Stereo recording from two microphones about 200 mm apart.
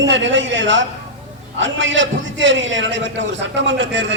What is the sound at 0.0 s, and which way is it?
A man's voice, 65° right (ahead or behind).